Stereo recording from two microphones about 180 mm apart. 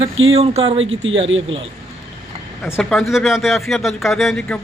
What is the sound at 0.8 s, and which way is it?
Speech, 90° right.